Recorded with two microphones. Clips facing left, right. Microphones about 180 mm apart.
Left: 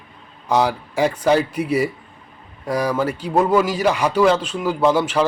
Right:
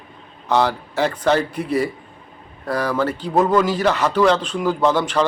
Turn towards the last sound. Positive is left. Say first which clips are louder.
# left 1 dB
turn(degrees=10)  # may be behind; listen again after turning